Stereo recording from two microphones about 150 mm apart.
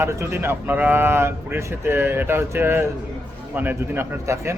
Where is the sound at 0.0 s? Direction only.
15° right (ahead or behind).